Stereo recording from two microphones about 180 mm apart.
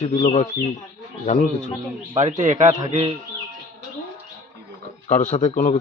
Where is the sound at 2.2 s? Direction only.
45° right (ahead or behind).